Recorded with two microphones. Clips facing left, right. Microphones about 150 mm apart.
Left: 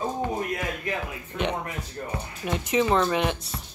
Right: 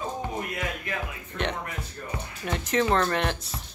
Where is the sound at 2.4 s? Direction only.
Centre (ahead or behind).